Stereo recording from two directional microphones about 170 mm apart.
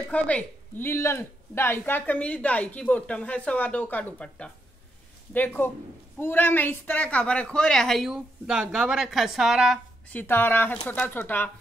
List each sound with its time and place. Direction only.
0.1 s a woman's voice: 10° left (ahead or behind)
10.0 s speech: 10° left (ahead or behind)